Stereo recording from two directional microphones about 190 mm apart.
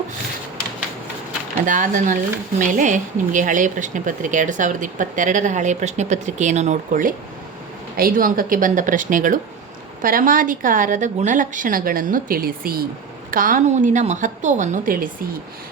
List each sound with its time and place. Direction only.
1.6 s a woman's voice: 45° right (ahead or behind)